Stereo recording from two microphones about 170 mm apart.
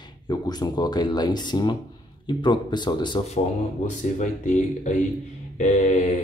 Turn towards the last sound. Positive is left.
turn(degrees=40)  # may be behind; listen again after turning